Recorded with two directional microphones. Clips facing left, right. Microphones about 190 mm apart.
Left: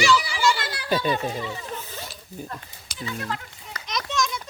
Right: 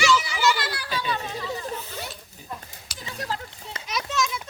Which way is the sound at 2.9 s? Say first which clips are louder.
Left 1 dB; 35° right (ahead or behind).